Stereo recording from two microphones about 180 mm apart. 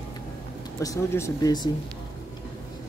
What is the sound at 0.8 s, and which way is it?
Speech, 15° left (ahead or behind).